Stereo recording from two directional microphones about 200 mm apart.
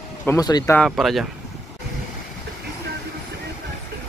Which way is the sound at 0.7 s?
Centre (ahead or behind).